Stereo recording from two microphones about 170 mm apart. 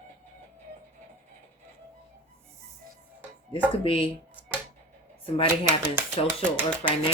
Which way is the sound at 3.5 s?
30° left (ahead or behind).